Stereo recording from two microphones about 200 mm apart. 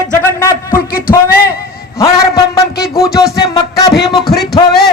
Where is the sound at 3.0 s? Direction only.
15° left (ahead or behind).